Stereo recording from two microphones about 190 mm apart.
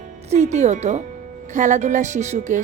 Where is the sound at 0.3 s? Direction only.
35° right (ahead or behind).